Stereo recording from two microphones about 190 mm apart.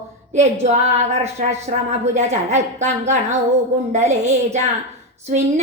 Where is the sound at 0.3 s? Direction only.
35° right (ahead or behind).